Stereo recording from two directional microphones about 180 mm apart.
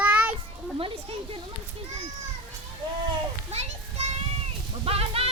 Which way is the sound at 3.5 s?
40° right (ahead or behind).